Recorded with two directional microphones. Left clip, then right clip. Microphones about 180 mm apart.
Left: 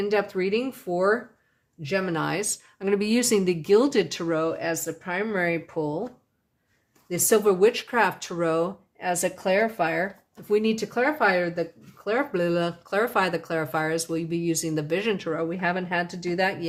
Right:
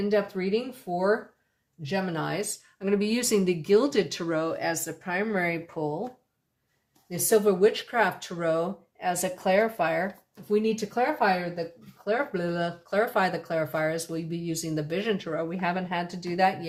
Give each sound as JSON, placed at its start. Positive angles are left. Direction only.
{"t": 0.0, "sound": "speech", "side_deg": 50}
{"t": 7.1, "sound": "speech", "side_deg": 50}
{"t": 10.5, "sound": "speech", "side_deg": 60}